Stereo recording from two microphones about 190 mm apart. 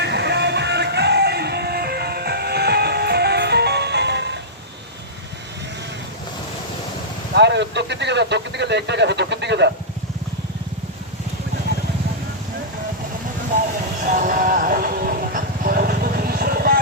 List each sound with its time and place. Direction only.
0.0 s music: 60° right (ahead or behind)
7.3 s a sound: 65° right (ahead or behind)
14.0 s vehicle: 45° right (ahead or behind)